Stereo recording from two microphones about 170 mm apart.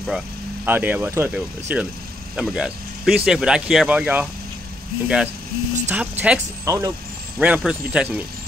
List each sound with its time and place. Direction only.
0.7 s speech: 10° right (ahead or behind)
6.6 s speech: 20° right (ahead or behind)
7.3 s speech: 5° right (ahead or behind)